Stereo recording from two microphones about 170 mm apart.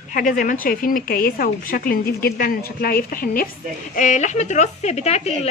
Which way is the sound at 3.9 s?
45° left (ahead or behind).